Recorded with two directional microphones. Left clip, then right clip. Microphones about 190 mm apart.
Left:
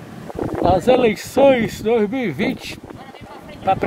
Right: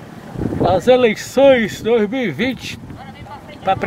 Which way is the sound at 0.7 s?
Centre (ahead or behind).